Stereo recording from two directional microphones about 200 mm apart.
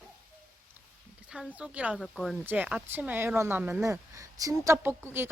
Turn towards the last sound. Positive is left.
turn(degrees=-10)  # may be behind; listen again after turning